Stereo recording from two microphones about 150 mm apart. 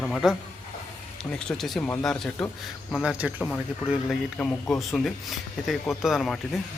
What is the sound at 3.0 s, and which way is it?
Speech, 5° right (ahead or behind).